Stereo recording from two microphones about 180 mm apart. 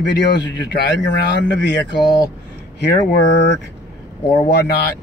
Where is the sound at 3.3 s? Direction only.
75° left (ahead or behind).